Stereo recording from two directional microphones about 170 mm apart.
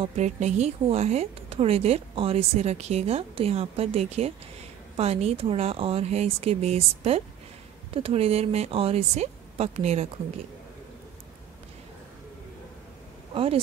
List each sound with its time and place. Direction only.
0.0 s a woman's voice: 40° right (ahead or behind)
13.3 s speech: 35° right (ahead or behind)